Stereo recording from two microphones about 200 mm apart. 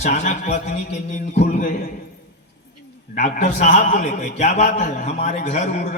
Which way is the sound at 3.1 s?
35° left (ahead or behind).